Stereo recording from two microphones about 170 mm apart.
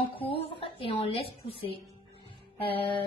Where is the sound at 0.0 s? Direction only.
30° left (ahead or behind).